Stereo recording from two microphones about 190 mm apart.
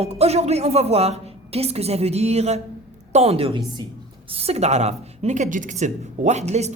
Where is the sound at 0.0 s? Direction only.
35° right (ahead or behind).